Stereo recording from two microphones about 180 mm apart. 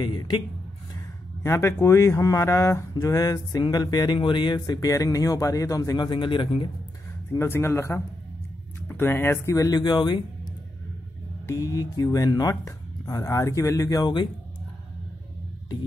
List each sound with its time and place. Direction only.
0.0 s speech: 25° left (ahead or behind)
1.4 s speech: 15° left (ahead or behind)
7.3 s speech: 15° left (ahead or behind)